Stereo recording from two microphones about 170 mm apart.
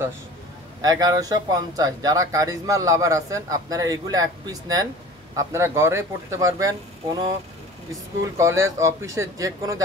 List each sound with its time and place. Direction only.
0.8 s speech: 20° right (ahead or behind)
8.2 s speech: 15° right (ahead or behind)